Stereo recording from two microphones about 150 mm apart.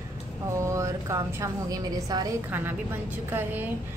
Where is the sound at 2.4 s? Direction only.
15° right (ahead or behind).